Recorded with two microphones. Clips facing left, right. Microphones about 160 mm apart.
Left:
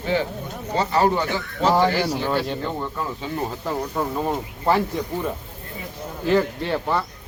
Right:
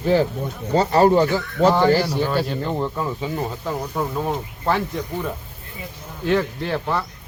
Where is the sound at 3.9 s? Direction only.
5° left (ahead or behind).